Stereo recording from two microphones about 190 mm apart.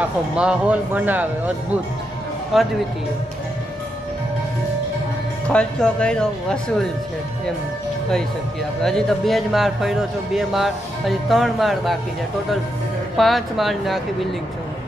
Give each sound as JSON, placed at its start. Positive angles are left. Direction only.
{"t": 0.0, "sound": "speech", "side_deg": -5}
{"t": 2.5, "sound": "a man's voice", "side_deg": 0}
{"t": 5.5, "sound": "a man's voice", "side_deg": 5}
{"t": 8.8, "sound": "a man's voice", "side_deg": 0}
{"t": 13.2, "sound": "a man's voice", "side_deg": 0}